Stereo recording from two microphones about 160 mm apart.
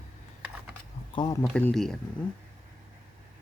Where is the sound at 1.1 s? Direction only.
25° left (ahead or behind).